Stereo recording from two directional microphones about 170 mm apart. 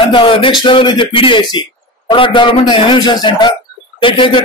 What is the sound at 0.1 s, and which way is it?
A man's voice, 30° left (ahead or behind).